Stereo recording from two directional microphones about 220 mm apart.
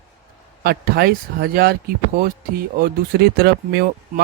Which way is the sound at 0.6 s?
45° right (ahead or behind).